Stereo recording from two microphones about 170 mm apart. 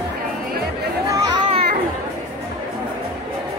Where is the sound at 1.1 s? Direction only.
20° right (ahead or behind).